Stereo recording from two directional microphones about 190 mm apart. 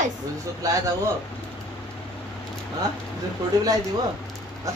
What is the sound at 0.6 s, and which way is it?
Speech, 20° right (ahead or behind).